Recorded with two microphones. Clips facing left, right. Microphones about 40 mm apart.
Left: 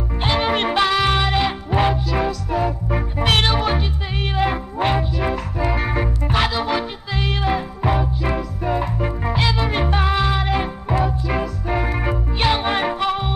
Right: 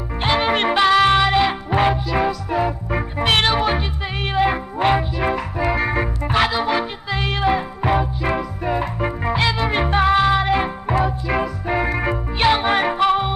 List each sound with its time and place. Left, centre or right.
0.2 s music: centre